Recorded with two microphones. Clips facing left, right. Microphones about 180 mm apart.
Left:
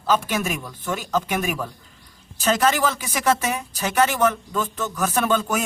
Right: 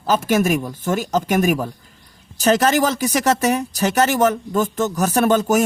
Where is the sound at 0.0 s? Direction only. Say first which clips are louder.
Right 5 dB; 45° right (ahead or behind).